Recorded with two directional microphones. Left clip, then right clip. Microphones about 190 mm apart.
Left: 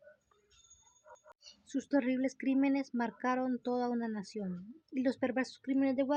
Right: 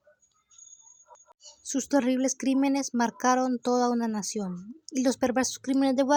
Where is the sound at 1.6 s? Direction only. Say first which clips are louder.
Right 7 dB; 35° right (ahead or behind).